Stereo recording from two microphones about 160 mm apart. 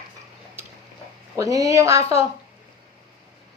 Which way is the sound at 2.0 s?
40° left (ahead or behind).